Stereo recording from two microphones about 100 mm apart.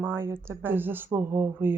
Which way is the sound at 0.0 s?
25° right (ahead or behind).